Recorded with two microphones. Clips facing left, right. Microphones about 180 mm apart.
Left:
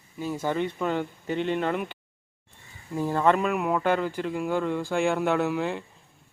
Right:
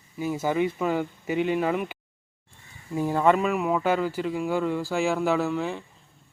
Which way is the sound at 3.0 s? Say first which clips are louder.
Right 1 dB; 10° right (ahead or behind).